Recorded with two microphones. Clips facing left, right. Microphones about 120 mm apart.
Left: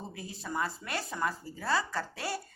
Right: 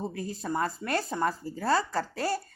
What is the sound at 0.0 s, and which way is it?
A woman's voice, 45° right (ahead or behind).